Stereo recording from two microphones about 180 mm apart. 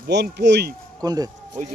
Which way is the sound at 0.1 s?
70° right (ahead or behind).